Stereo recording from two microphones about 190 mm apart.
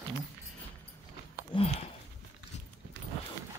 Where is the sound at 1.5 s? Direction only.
30° left (ahead or behind).